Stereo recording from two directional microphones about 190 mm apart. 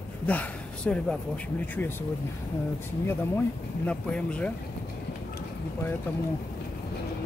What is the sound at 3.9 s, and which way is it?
Speech, 5° left (ahead or behind).